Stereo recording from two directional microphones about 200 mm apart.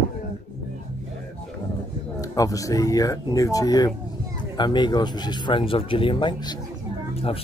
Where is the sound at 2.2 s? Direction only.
15° left (ahead or behind).